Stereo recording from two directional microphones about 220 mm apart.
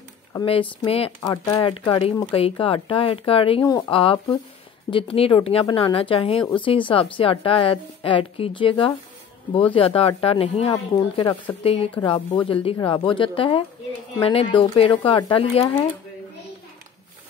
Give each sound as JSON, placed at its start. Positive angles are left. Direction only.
{"t": 0.3, "sound": "speech", "side_deg": 20}